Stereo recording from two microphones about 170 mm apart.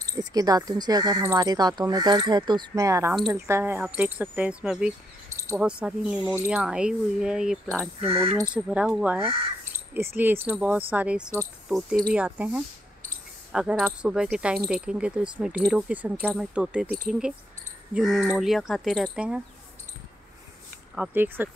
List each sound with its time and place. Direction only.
0.2 s speech: 20° right (ahead or behind); by 7.5 s 5° right (ahead or behind)
8.0 s speech: 35° right (ahead or behind)
8.5 s speech: 5° right (ahead or behind)
20.9 s speech: 10° right (ahead or behind)